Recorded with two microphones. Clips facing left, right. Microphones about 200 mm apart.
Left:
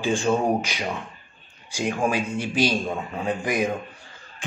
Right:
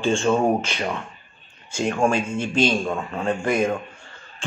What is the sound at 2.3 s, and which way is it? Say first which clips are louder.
Mantra: right 2 dB; 15° left (ahead or behind).